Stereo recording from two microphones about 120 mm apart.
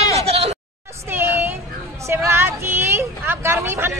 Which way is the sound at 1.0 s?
20° right (ahead or behind).